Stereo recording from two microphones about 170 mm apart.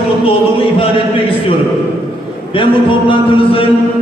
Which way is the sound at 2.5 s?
30° left (ahead or behind).